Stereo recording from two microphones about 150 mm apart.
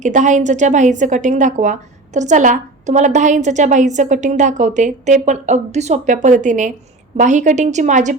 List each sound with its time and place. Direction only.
0.0 s a woman's voice: 55° right (ahead or behind)